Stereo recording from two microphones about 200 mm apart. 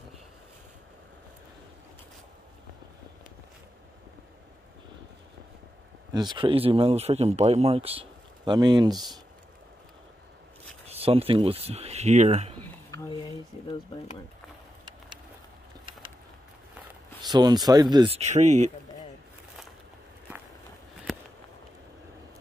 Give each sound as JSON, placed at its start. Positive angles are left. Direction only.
{"t": 6.1, "sound": "speech", "side_deg": -25}
{"t": 10.9, "sound": "speech", "side_deg": -30}
{"t": 12.9, "sound": "a sound", "side_deg": 20}
{"t": 17.3, "sound": "speech", "side_deg": -20}